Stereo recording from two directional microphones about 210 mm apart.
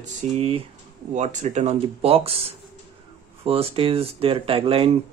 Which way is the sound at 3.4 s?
25° right (ahead or behind).